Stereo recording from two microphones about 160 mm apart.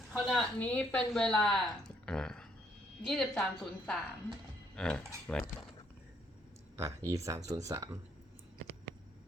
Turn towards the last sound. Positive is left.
turn(degrees=-20)  # may be behind; listen again after turning